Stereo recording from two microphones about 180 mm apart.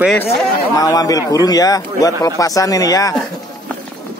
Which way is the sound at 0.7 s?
20° left (ahead or behind).